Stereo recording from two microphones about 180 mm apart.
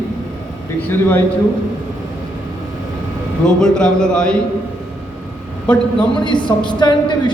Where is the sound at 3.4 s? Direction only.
5° left (ahead or behind).